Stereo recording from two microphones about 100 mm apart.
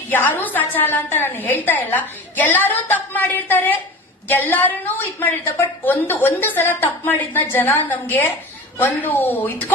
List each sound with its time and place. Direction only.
0.1 s a woman's voice: 20° left (ahead or behind)